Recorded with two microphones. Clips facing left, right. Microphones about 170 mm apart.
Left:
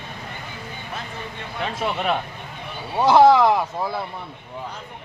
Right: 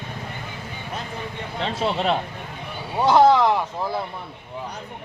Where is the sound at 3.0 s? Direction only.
5° left (ahead or behind).